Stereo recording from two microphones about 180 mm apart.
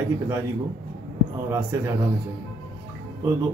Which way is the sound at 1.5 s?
15° right (ahead or behind).